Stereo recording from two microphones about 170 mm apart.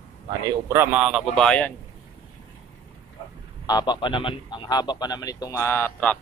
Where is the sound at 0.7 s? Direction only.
10° right (ahead or behind).